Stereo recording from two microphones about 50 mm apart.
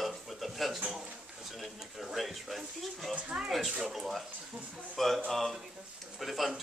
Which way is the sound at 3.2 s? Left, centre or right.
Right.